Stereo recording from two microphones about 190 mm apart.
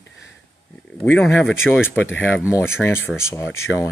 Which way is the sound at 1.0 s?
10° left (ahead or behind).